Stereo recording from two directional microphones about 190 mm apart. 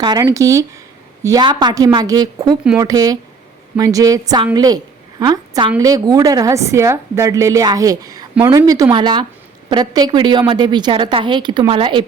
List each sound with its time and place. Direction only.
0.0 s a woman's voice: 20° right (ahead or behind)